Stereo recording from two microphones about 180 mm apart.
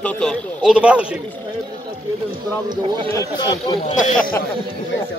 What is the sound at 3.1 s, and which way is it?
Speech, 20° left (ahead or behind).